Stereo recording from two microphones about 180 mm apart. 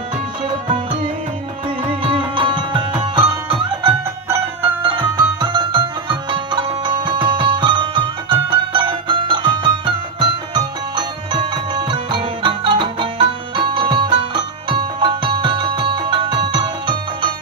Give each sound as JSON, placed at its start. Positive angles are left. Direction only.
{"t": 1.9, "sound": "music", "side_deg": -30}